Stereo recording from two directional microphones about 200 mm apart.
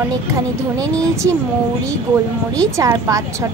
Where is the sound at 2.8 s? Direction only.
15° right (ahead or behind).